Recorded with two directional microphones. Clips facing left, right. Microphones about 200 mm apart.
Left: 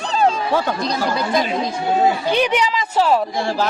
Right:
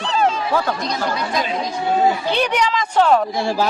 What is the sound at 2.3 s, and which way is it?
Speech, 10° left (ahead or behind).